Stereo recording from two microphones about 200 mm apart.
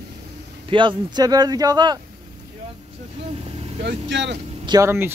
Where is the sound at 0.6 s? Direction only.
25° right (ahead or behind).